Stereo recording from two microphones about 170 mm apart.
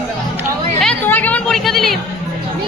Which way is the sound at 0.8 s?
10° left (ahead or behind).